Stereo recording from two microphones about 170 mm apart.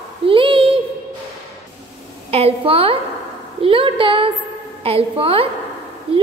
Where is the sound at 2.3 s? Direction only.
35° right (ahead or behind).